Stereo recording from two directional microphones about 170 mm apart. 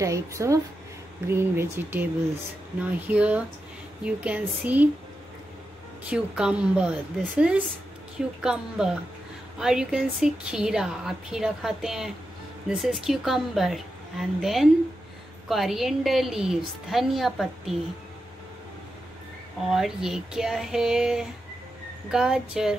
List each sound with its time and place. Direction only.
0.0 s speech: 20° right (ahead or behind)
6.0 s a woman's voice: 5° right (ahead or behind)
19.7 s a woman's voice: centre (ahead or behind)